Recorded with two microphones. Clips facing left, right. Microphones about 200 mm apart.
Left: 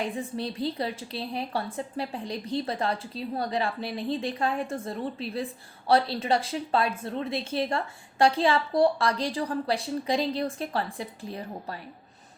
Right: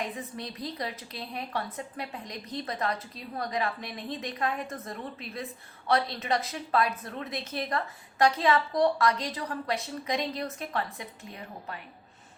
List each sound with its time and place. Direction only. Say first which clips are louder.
0.0 s a woman's voice: left 5 dB; 30° left (ahead or behind)